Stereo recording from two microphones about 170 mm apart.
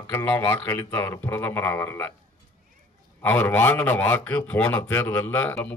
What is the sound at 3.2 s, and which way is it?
Speech, 10° left (ahead or behind).